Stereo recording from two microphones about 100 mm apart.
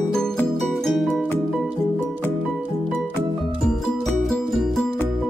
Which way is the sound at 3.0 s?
Centre (ahead or behind).